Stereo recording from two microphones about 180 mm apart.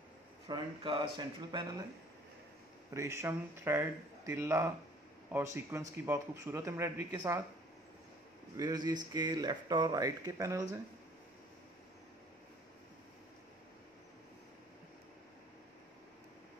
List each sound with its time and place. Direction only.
0.5 s speech: 25° right (ahead or behind)
2.9 s speech: 15° right (ahead or behind)
8.5 s speech: 20° right (ahead or behind)